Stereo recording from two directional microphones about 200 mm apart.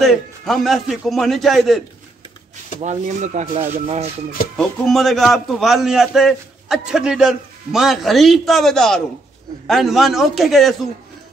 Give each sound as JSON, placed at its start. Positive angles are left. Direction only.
{"t": 0.0, "sound": "a man's voice", "side_deg": 0}
{"t": 2.8, "sound": "speech", "side_deg": -35}
{"t": 4.6, "sound": "a man's voice", "side_deg": 0}